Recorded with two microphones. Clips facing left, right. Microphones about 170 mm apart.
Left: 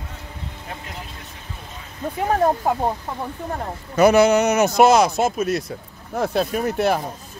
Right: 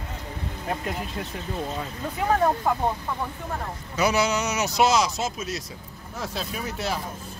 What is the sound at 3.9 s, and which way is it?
Speech, 55° left (ahead or behind).